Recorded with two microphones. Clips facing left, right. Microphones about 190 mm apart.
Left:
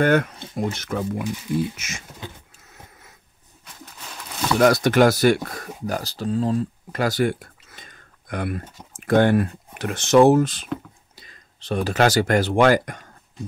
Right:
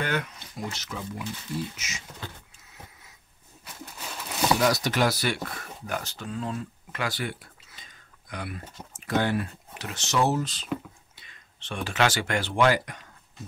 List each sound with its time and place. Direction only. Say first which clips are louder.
0.0 s speech: left 11 dB; 50° left (ahead or behind)
2.6 s wheeze: left 3 dB; 50° left (ahead or behind)
3.6 s a sound: right 1 dB; 5° right (ahead or behind)
4.6 s speech: left 13 dB; 55° left (ahead or behind)
11.1 s speech: left 5 dB; 40° left (ahead or behind)